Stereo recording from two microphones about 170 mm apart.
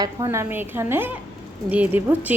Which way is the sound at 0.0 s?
20° right (ahead or behind).